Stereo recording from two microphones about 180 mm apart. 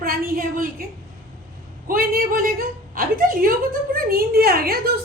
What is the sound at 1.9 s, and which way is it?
A woman's voice, 50° right (ahead or behind).